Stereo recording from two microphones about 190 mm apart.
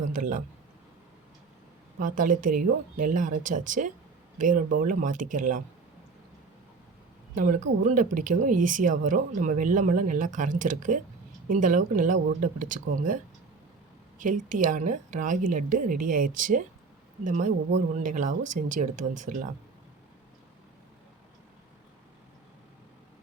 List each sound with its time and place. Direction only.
0.1 s a man's voice: 45° right (ahead or behind)
2.0 s speech: 45° right (ahead or behind)
7.3 s speech: 45° right (ahead or behind)
14.2 s speech: 45° right (ahead or behind)